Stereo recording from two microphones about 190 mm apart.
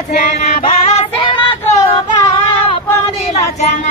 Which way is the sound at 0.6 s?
30° left (ahead or behind).